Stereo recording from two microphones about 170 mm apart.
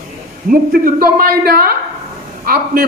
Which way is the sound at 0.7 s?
60° right (ahead or behind).